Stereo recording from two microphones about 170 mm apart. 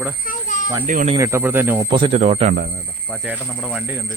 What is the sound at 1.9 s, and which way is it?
Speech, 35° right (ahead or behind).